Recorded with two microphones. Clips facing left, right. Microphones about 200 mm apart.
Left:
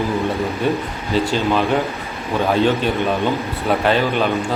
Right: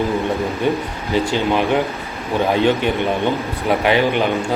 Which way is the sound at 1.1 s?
15° right (ahead or behind).